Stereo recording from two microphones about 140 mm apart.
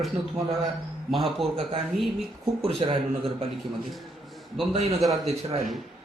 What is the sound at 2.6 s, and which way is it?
Speech, 40° right (ahead or behind).